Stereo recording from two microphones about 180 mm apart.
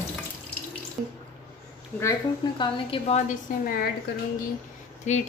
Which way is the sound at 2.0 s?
20° left (ahead or behind).